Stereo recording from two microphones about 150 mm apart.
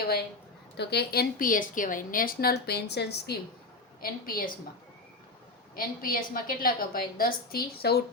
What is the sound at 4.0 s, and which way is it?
Speech, 70° left (ahead or behind).